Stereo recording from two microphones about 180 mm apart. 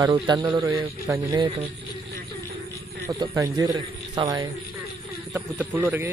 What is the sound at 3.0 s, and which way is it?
A man's voice, 15° right (ahead or behind).